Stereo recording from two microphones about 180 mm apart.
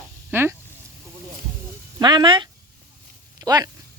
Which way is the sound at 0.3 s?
10° right (ahead or behind).